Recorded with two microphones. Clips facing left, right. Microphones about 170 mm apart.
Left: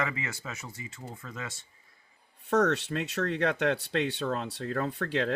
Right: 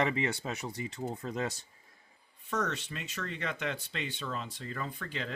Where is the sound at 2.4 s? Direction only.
65° left (ahead or behind).